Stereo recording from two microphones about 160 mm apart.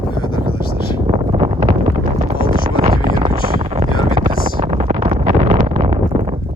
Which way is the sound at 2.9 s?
35° right (ahead or behind).